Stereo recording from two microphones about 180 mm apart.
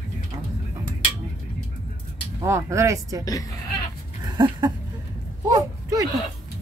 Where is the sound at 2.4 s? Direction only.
15° right (ahead or behind).